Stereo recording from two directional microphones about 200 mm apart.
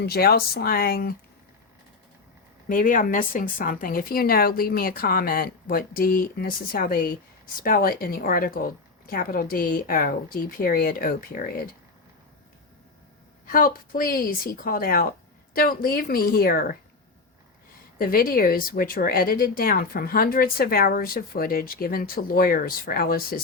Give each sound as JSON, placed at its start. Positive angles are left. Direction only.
{"t": 0.0, "sound": "speech", "side_deg": 50}
{"t": 2.6, "sound": "speech", "side_deg": 40}
{"t": 13.5, "sound": "speech", "side_deg": 45}
{"t": 17.9, "sound": "speech", "side_deg": 45}